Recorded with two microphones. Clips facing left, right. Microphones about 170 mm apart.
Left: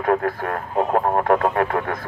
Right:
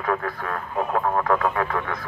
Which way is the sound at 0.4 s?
50° left (ahead or behind).